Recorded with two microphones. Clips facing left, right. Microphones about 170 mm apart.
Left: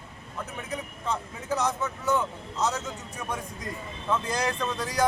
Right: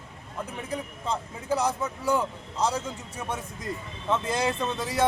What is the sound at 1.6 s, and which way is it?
Speech, 30° right (ahead or behind).